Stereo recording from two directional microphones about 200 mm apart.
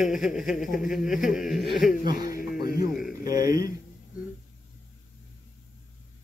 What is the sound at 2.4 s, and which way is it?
Music, 50° left (ahead or behind).